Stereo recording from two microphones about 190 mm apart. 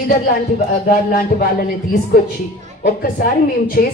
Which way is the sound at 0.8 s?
50° left (ahead or behind).